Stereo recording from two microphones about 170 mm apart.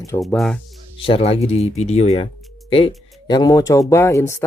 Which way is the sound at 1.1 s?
35° left (ahead or behind).